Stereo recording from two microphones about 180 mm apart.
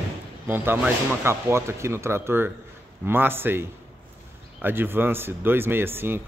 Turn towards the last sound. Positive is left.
turn(degrees=-10)  # may be behind; listen again after turning